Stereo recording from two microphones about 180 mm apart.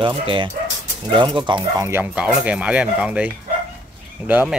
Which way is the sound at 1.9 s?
10° right (ahead or behind).